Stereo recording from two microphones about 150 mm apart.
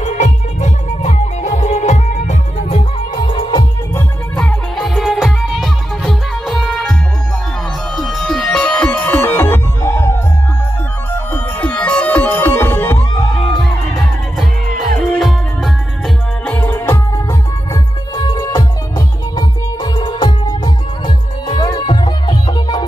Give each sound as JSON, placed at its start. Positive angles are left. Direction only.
{"t": 0.0, "sound": "music", "side_deg": 50}
{"t": 3.2, "sound": "music", "side_deg": 35}
{"t": 4.4, "sound": "music", "side_deg": 5}
{"t": 11.3, "sound": "music", "side_deg": 10}
{"t": 13.3, "sound": "music", "side_deg": 0}
{"t": 16.4, "sound": "music", "side_deg": 10}
{"t": 18.1, "sound": "music", "side_deg": 25}